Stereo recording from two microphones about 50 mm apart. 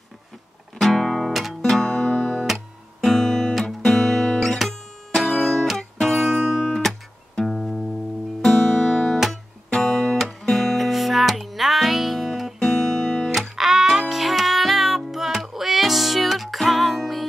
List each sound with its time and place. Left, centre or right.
0.7 s music: centre
1.6 s music: centre
2.3 s music: centre
8.5 s music: centre
13.6 s music: centre